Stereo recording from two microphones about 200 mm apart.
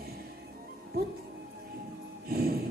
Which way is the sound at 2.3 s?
50° right (ahead or behind).